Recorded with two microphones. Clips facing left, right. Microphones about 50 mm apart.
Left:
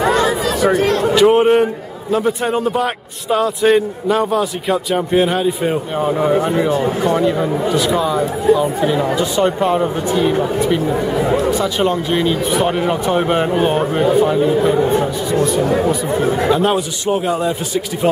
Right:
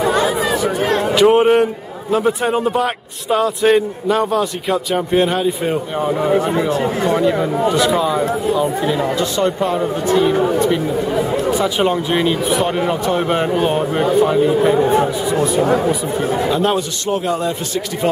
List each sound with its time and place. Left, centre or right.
0.1 s chatter: centre
1.1 s a man's voice: centre
7.7 s a man's voice: centre; by 10.1 s left
11.5 s speech: centre
12.4 s a man's voice: centre
14.8 s speech: right
15.3 s a man's voice: centre